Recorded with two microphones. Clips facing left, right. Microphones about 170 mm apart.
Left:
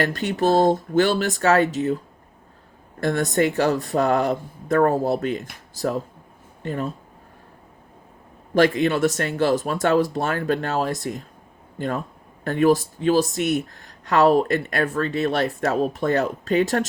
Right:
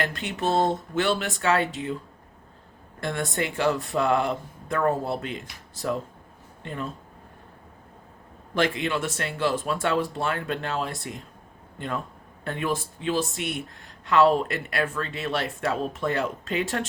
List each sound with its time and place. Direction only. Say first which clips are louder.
0.1 s speech: left 6 dB; 40° left (ahead or behind)
3.0 s speech: left 8 dB; 40° left (ahead or behind)
8.5 s speech: left 7 dB; 45° left (ahead or behind)
12.5 s speech: left 10 dB; 40° left (ahead or behind)